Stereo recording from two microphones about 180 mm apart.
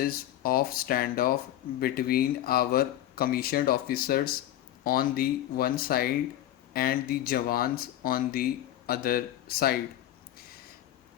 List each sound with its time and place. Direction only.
0.0 s speech: 55° left (ahead or behind)